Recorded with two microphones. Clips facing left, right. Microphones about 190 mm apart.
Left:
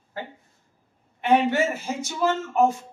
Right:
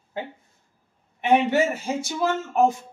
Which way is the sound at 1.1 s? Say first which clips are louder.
Right 1 dB; 15° right (ahead or behind).